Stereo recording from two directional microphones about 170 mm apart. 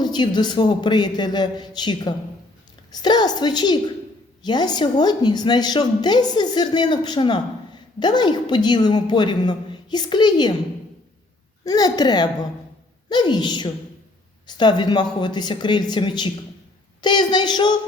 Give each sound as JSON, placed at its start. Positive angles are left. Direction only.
{"t": 0.0, "sound": "a woman's voice", "side_deg": 25}
{"t": 11.6, "sound": "a woman's voice", "side_deg": 20}